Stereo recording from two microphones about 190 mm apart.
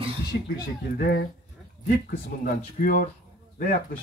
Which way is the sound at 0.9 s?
50° left (ahead or behind).